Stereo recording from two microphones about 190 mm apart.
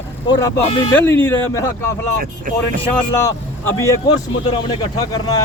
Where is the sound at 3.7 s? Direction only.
15° left (ahead or behind).